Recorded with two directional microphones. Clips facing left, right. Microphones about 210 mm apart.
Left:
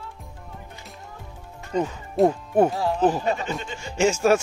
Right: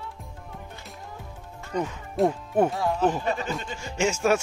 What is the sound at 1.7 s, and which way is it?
Speech, 20° left (ahead or behind).